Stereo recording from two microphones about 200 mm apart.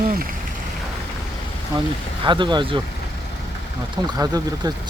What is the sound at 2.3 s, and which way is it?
Speech, 25° right (ahead or behind).